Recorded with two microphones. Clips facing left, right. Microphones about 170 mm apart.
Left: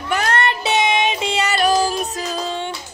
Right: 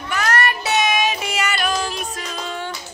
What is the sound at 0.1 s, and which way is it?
Music, 30° left (ahead or behind).